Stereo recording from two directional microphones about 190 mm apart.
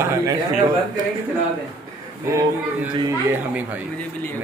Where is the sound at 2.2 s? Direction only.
15° right (ahead or behind).